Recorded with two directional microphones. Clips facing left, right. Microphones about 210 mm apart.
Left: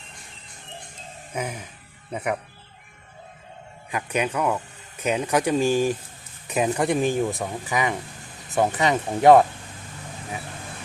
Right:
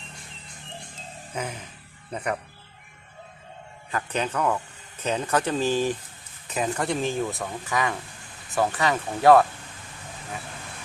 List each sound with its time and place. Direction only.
1.3 s speech: 10° left (ahead or behind)
3.9 s speech: 10° left (ahead or behind)